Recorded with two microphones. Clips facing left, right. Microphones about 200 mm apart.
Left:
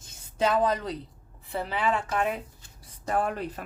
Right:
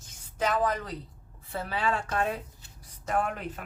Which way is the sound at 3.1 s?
35° left (ahead or behind).